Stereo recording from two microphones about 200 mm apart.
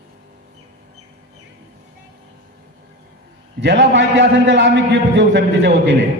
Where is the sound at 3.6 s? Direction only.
60° right (ahead or behind).